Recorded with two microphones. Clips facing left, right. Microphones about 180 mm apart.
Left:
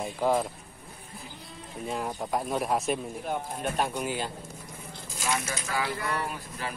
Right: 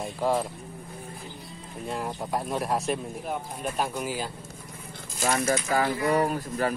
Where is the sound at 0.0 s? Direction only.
Centre (ahead or behind).